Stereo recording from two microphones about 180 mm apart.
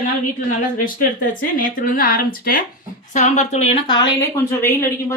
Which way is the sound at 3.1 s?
40° left (ahead or behind).